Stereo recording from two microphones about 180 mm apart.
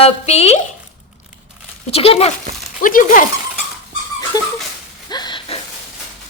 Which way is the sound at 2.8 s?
50° left (ahead or behind).